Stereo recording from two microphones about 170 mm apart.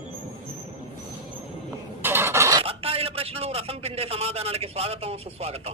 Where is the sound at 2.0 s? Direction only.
15° right (ahead or behind).